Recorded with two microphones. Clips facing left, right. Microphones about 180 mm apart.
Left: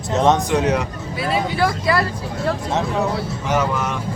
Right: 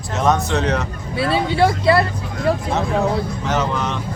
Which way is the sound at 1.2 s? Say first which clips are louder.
Right 3 dB; 25° right (ahead or behind).